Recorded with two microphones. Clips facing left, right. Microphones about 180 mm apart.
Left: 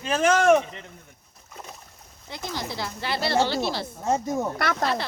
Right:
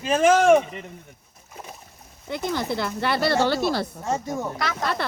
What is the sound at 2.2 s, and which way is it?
Speech, 55° right (ahead or behind).